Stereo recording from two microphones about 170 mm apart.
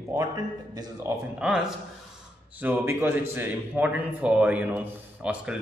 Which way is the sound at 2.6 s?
15° right (ahead or behind).